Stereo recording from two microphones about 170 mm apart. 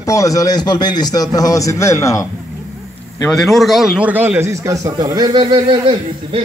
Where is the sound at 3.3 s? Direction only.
Centre (ahead or behind).